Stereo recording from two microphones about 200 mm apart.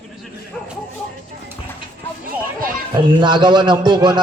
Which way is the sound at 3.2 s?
20° right (ahead or behind).